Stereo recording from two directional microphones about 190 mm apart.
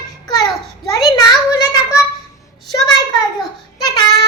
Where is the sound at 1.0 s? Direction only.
20° left (ahead or behind).